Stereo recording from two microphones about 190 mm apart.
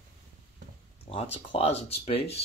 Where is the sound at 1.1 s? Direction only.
30° left (ahead or behind).